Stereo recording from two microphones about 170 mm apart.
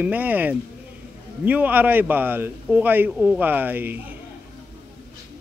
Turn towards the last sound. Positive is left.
turn(degrees=-10)  # may be behind; listen again after turning